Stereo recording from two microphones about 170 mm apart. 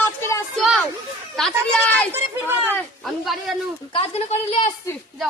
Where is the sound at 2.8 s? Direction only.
Centre (ahead or behind).